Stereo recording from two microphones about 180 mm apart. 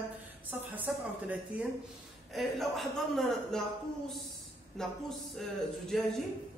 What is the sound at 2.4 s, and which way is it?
A man's voice, centre (ahead or behind).